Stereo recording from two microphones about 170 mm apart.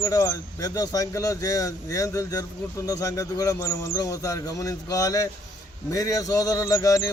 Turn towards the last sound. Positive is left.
turn(degrees=15)  # may be behind; listen again after turning